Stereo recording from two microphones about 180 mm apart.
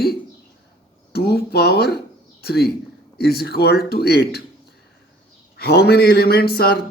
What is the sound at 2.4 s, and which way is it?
Speech, 60° left (ahead or behind).